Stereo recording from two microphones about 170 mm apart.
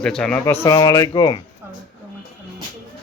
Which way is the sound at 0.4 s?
15° left (ahead or behind).